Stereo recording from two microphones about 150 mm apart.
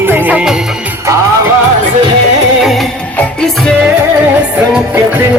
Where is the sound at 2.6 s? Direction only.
Centre (ahead or behind).